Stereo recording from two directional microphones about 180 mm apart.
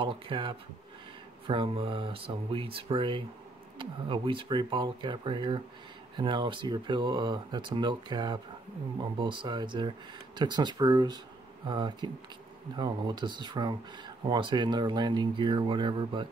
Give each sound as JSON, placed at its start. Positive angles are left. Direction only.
{"t": 0.0, "sound": "speech", "side_deg": -25}